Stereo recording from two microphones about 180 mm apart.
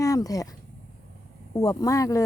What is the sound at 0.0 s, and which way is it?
Speech, 20° left (ahead or behind).